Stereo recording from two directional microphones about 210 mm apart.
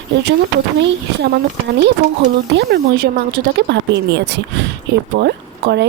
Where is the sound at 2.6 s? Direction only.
50° right (ahead or behind).